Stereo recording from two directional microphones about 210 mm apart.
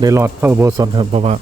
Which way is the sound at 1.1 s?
30° right (ahead or behind).